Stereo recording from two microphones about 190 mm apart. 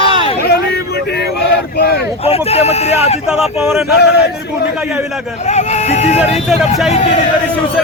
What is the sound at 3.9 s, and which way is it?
Speech, 60° left (ahead or behind).